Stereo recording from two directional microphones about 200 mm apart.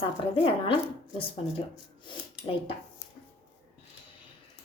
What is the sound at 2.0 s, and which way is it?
Speech, 30° left (ahead or behind).